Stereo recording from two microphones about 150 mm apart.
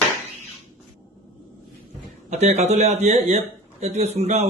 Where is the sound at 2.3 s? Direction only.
50° right (ahead or behind).